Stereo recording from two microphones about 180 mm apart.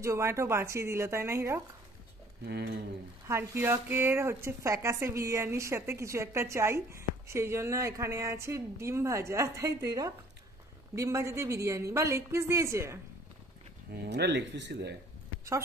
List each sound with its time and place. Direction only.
0.0 s speech: 15° right (ahead or behind)
2.4 s speech: 65° right (ahead or behind)
3.3 s speech: 15° right (ahead or behind)
14.0 s speech: 70° right (ahead or behind)